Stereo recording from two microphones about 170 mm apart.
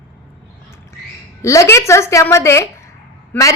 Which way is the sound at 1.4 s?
15° left (ahead or behind).